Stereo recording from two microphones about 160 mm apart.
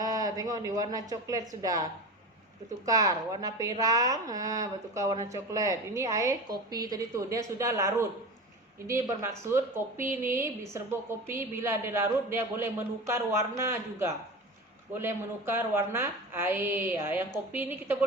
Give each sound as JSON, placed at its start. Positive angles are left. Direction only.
{"t": 0.0, "sound": "speech", "side_deg": -20}
{"t": 2.8, "sound": "a woman's voice", "side_deg": -20}